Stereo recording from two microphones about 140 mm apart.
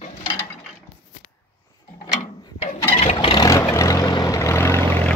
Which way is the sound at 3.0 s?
35° left (ahead or behind).